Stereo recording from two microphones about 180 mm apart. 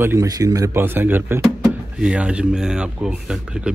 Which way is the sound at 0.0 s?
15° right (ahead or behind).